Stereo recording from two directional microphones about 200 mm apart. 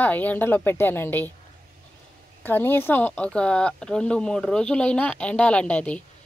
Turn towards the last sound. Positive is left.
turn(degrees=5)  # may be behind; listen again after turning